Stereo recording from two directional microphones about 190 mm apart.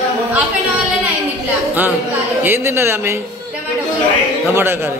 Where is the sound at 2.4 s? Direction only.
10° right (ahead or behind).